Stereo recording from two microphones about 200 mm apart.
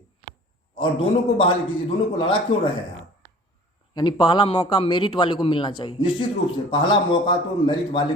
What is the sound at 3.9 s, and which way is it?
Speech, 20° left (ahead or behind).